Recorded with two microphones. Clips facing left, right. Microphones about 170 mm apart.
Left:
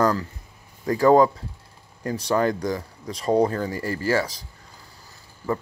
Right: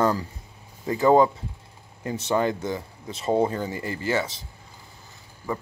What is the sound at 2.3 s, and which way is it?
Speech, 25° right (ahead or behind).